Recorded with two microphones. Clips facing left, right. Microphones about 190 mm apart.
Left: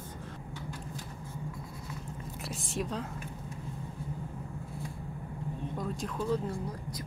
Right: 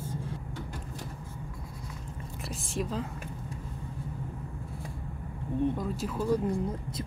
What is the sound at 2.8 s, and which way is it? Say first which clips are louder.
Speech: right 2 dB; centre (ahead or behind).